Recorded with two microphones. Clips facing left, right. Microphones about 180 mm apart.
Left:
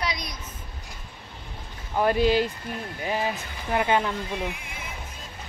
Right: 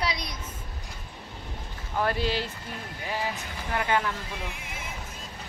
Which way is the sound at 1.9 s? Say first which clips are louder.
Left 6 dB; 15° left (ahead or behind).